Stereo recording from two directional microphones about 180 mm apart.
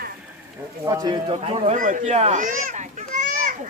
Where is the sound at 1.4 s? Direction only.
35° right (ahead or behind).